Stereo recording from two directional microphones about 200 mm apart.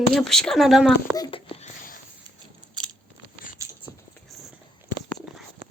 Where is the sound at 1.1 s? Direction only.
25° left (ahead or behind).